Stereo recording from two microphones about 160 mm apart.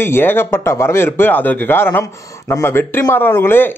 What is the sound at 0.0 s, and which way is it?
Speech, 15° left (ahead or behind).